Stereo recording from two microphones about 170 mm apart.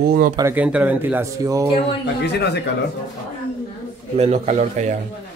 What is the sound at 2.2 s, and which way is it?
Speech, 80° left.